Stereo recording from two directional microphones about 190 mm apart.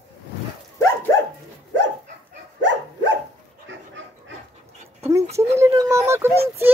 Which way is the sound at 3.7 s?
70° right (ahead or behind).